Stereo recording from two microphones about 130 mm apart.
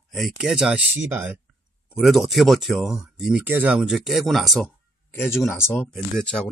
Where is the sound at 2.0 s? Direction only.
Centre (ahead or behind).